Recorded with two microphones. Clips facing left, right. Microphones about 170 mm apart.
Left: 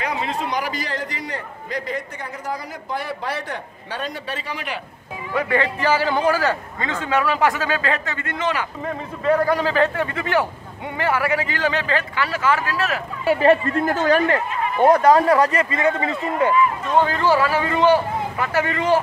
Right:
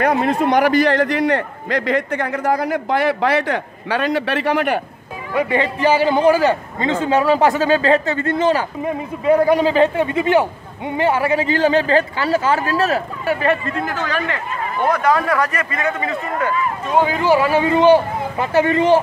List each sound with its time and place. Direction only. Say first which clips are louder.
0.0 s a man's voice: right 9 dB; 55° right (ahead or behind)
5.3 s a man's voice: right 3 dB; 20° right (ahead or behind)
8.8 s a man's voice: right 3 dB; 15° right (ahead or behind); by 13.0 s 30° right (ahead or behind)
13.2 s speech: left 6 dB; 30° left (ahead or behind)
16.9 s a man's voice: right 4 dB; 10° right (ahead or behind)